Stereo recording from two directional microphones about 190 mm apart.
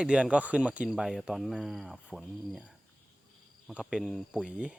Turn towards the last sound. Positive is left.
turn(degrees=-5)  # may be behind; listen again after turning